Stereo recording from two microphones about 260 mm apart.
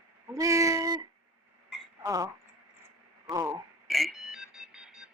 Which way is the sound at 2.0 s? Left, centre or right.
Centre.